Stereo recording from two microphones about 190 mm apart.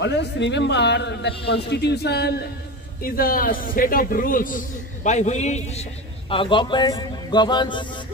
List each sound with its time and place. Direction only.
0.0 s a man's voice: 65° left (ahead or behind); by 7.8 s 25° left (ahead or behind)